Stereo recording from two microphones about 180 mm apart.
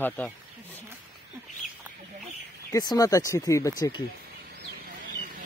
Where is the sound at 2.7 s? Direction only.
20° left (ahead or behind).